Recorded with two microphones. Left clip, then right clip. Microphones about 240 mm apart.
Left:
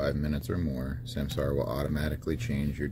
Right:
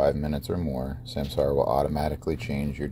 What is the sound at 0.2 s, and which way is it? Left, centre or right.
Speech, right.